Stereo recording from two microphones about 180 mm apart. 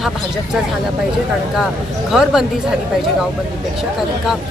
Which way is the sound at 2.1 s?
5° right (ahead or behind).